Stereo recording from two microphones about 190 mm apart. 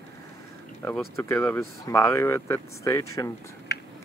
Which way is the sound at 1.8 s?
15° left (ahead or behind).